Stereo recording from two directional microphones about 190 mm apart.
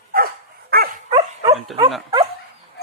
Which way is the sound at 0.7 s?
55° right (ahead or behind).